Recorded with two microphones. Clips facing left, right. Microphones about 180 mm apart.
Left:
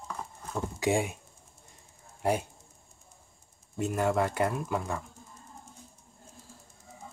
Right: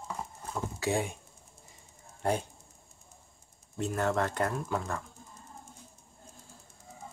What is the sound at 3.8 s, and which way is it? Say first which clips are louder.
Speech: left 2 dB; 10° left (ahead or behind).